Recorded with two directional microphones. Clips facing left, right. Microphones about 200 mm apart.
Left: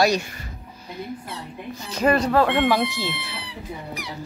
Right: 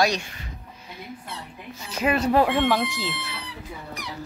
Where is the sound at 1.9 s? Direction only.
5° right (ahead or behind).